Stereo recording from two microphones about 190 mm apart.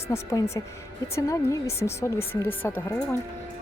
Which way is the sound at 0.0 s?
15° left (ahead or behind).